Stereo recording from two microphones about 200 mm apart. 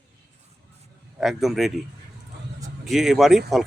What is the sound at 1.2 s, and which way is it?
Speech, centre (ahead or behind).